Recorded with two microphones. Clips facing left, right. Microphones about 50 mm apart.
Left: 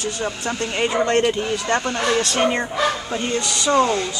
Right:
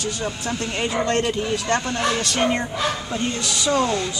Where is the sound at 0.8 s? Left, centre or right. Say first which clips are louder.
Left 4 dB; left.